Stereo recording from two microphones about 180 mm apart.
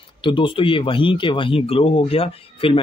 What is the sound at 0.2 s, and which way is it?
Speech, 25° left (ahead or behind).